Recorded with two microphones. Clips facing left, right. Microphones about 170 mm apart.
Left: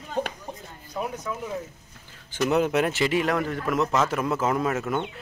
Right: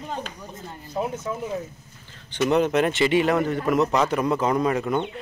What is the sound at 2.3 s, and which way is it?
Speech, 5° left (ahead or behind).